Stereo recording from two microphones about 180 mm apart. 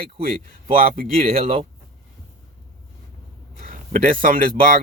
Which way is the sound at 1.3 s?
40° right (ahead or behind).